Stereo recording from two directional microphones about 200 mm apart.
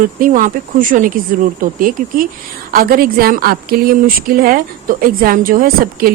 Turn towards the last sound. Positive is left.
turn(degrees=-45)  # may be behind; listen again after turning